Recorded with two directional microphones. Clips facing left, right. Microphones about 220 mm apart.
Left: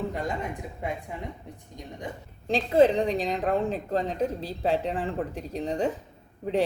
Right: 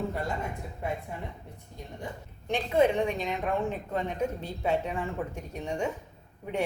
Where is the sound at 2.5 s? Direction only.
35° left (ahead or behind).